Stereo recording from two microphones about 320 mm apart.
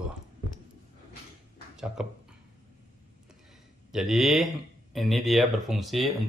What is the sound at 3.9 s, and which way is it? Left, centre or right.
Speech, centre.